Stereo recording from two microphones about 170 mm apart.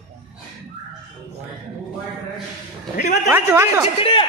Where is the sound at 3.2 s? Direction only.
15° right (ahead or behind).